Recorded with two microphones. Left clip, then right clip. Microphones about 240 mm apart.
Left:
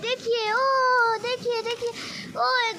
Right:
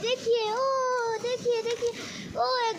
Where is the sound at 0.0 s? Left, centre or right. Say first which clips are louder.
Left 1 dB; centre.